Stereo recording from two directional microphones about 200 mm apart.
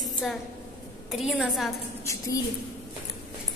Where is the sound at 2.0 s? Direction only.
15° left (ahead or behind).